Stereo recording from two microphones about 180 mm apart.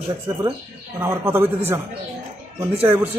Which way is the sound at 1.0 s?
15° right (ahead or behind).